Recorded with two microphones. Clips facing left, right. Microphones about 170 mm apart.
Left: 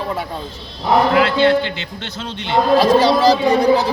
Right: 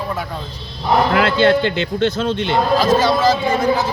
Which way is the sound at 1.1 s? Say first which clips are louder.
Even; 50° right (ahead or behind).